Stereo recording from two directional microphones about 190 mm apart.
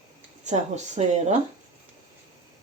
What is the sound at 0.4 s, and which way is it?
Speech, 35° right (ahead or behind).